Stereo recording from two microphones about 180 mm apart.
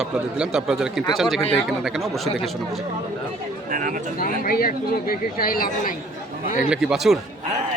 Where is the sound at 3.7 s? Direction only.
45° right (ahead or behind).